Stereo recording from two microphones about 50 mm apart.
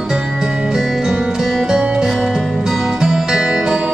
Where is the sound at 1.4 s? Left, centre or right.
Centre.